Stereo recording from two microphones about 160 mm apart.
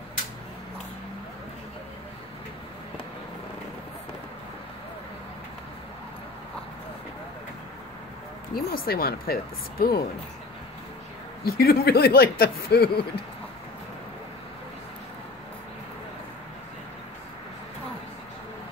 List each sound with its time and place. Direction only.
8.5 s speech: 70° left (ahead or behind)
11.4 s speech: 70° left (ahead or behind)